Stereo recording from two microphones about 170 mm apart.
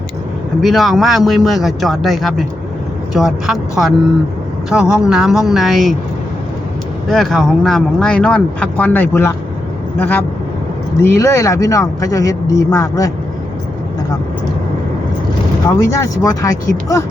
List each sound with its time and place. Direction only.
0.6 s speech: centre (ahead or behind)
7.1 s speech: centre (ahead or behind); by 13.1 s 20° left (ahead or behind)
15.6 s speech: 15° left (ahead or behind)